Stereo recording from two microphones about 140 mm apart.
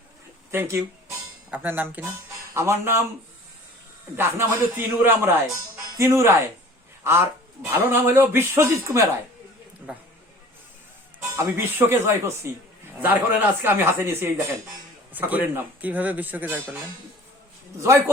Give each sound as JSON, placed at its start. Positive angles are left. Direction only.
{"t": 0.5, "sound": "a man's voice", "side_deg": -15}
{"t": 4.2, "sound": "a man's voice", "side_deg": -15}
{"t": 9.9, "sound": "a man's voice", "side_deg": -10}
{"t": 11.2, "sound": "a man's voice", "side_deg": -15}
{"t": 17.7, "sound": "speech", "side_deg": -20}